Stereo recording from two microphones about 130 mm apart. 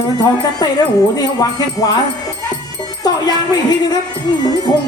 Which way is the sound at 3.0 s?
30° left (ahead or behind).